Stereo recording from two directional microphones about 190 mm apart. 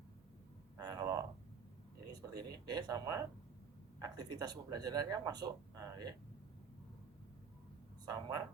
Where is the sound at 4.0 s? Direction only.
20° right (ahead or behind).